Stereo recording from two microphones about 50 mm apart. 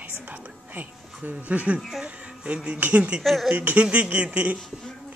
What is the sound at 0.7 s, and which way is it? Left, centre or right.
Speech, right.